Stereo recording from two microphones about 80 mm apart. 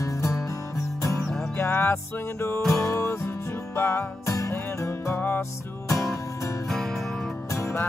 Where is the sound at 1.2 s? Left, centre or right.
Centre.